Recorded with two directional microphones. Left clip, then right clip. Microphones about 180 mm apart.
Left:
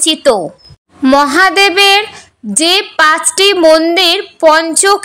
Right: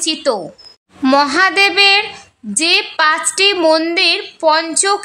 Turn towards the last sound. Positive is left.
turn(degrees=25)  # may be behind; listen again after turning